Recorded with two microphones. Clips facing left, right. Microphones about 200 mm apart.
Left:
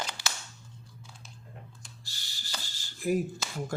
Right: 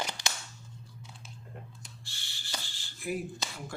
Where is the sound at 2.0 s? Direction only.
40° left (ahead or behind).